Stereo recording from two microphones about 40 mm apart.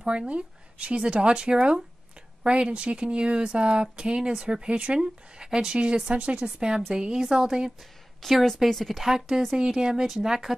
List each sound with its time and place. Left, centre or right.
0.3 s speech: right
6.4 s speech: centre
8.2 s a woman's voice: centre
9.0 s speech: centre